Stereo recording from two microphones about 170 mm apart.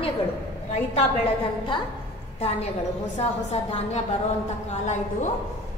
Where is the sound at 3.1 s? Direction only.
40° left (ahead or behind).